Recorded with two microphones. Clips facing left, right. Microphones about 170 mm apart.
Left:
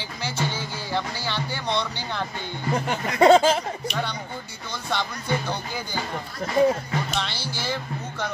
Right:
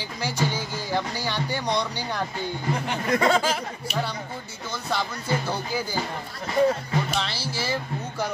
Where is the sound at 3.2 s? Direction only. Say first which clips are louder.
Left 9 dB; 25° left (ahead or behind).